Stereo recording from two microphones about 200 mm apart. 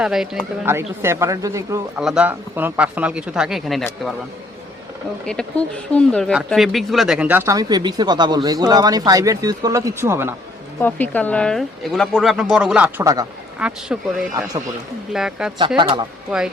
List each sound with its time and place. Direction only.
0.0 s speech: centre (ahead or behind)
2.0 s speech: 5° right (ahead or behind)
5.2 s speech: 5° left (ahead or behind); by 10.3 s 10° right (ahead or behind)
10.8 s speech: 10° left (ahead or behind)
15.1 s speech: 5° right (ahead or behind)
15.8 s speech: 25° right (ahead or behind)
16.3 s speech: centre (ahead or behind)